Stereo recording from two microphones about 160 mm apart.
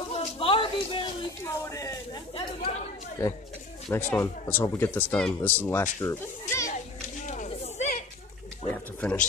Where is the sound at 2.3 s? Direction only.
35° left (ahead or behind).